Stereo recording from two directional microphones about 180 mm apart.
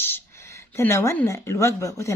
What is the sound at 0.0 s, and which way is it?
A woman's voice, 15° left (ahead or behind).